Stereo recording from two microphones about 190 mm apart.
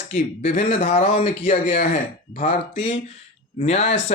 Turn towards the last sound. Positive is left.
turn(degrees=35)  # may be behind; listen again after turning